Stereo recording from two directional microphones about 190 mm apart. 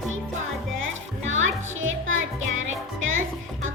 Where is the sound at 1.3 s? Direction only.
90° right.